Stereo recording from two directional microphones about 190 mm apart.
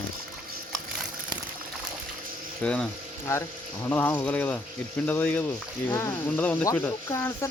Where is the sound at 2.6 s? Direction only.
5° left (ahead or behind).